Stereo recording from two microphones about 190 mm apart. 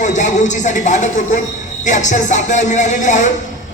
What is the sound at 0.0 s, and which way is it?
A man's voice, 40° left (ahead or behind).